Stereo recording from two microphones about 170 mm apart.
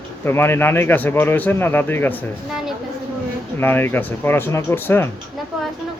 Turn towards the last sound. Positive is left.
turn(degrees=15)  # may be behind; listen again after turning